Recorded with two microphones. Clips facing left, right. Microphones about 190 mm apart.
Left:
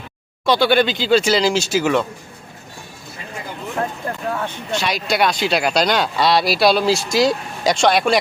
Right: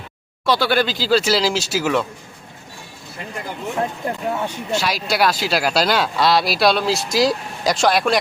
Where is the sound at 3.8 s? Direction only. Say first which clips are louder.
Even; 15° right (ahead or behind).